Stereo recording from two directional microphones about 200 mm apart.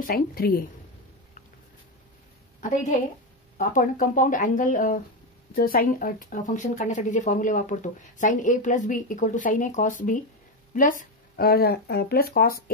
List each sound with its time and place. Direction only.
0.0 s speech: 50° left (ahead or behind)
3.5 s speech: 40° left (ahead or behind)